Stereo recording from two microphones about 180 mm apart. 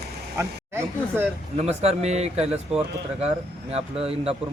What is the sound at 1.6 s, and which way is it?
Speech, 35° right (ahead or behind).